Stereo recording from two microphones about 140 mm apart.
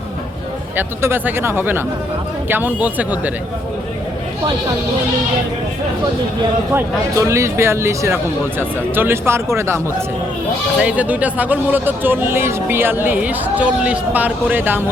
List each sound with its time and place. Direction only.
0.8 s speech: 15° right (ahead or behind)
6.7 s speech: 20° right (ahead or behind)